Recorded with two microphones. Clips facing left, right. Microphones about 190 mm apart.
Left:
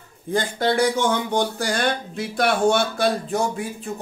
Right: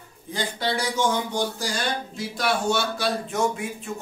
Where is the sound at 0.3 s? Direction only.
50° left (ahead or behind).